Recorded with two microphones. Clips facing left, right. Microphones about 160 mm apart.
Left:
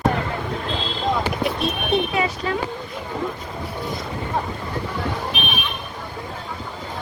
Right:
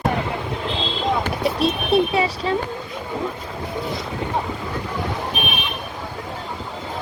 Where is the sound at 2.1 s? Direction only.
30° right (ahead or behind).